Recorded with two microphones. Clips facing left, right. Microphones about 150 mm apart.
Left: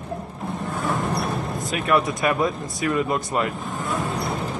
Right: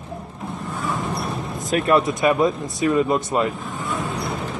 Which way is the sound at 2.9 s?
Centre (ahead or behind).